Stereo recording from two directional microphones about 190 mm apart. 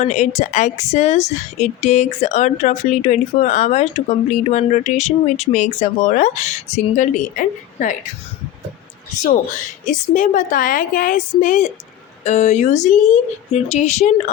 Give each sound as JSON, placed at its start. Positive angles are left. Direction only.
{"t": 0.0, "sound": "a woman's voice", "side_deg": 40}
{"t": 9.8, "sound": "a woman's voice", "side_deg": 40}